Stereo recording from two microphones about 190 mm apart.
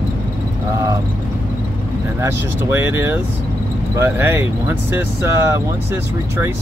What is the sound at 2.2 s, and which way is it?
Speech, 10° right (ahead or behind).